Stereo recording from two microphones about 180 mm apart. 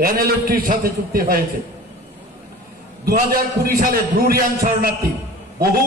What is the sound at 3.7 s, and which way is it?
A man's voice, 55° right (ahead or behind).